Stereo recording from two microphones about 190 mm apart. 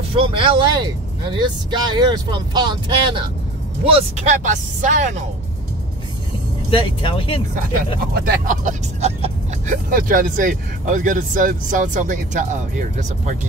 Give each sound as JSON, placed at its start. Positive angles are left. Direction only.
{"t": 0.1, "sound": "speech", "side_deg": -30}
{"t": 4.3, "sound": "speech", "side_deg": -40}
{"t": 6.7, "sound": "speech", "side_deg": 25}
{"t": 8.0, "sound": "speech", "side_deg": -45}